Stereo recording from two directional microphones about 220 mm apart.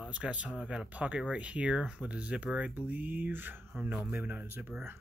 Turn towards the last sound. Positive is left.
turn(degrees=-10)  # may be behind; listen again after turning